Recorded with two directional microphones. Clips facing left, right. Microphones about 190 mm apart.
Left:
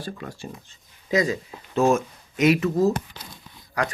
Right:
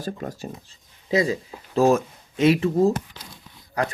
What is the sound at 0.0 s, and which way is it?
Speech, 40° right (ahead or behind).